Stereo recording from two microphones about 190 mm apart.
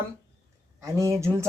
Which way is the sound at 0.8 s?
15° right (ahead or behind).